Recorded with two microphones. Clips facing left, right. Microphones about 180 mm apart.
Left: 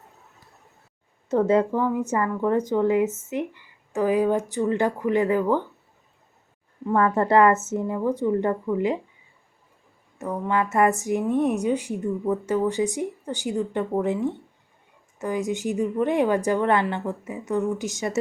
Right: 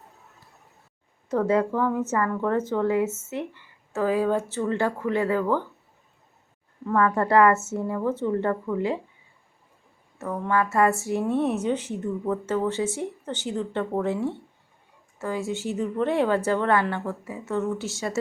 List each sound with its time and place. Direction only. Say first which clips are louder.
1.3 s a woman's voice: left 3 dB; 25° left (ahead or behind)
6.8 s a woman's voice: left 1 dB; 25° left (ahead or behind)
10.2 s a woman's voice: even; 15° left (ahead or behind)